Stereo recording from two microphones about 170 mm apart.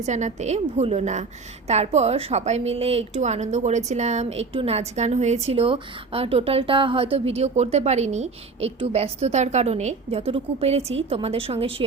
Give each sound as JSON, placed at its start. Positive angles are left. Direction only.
{"t": 0.0, "sound": "a woman's voice", "side_deg": -45}